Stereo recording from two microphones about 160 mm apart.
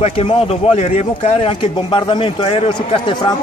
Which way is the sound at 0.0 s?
35° left (ahead or behind).